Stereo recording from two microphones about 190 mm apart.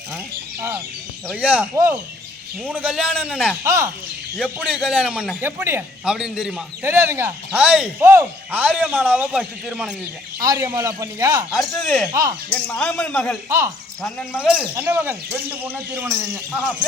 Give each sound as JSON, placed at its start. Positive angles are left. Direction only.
{"t": 1.3, "sound": "speech", "side_deg": -10}
{"t": 4.4, "sound": "a man's voice", "side_deg": -5}
{"t": 10.4, "sound": "speech", "side_deg": -15}
{"t": 11.5, "sound": "a man's voice", "side_deg": 0}
{"t": 13.5, "sound": "speech", "side_deg": -15}
{"t": 14.0, "sound": "a man's voice", "side_deg": 5}